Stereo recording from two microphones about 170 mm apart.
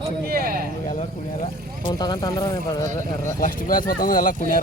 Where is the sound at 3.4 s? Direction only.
55° left (ahead or behind).